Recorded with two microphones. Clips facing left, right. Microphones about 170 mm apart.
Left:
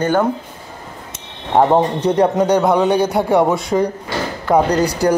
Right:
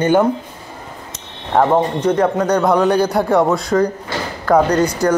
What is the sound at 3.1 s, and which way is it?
Speech, 5° left (ahead or behind).